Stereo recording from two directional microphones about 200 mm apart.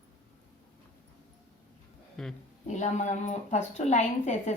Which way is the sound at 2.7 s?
35° left (ahead or behind).